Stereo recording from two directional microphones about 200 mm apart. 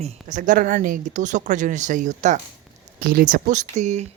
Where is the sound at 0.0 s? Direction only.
40° right (ahead or behind).